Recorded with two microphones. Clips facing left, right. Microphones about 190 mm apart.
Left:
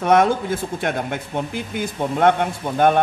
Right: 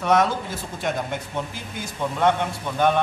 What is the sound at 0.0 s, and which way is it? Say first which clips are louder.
Speech: left 4 dB; 50° left (ahead or behind).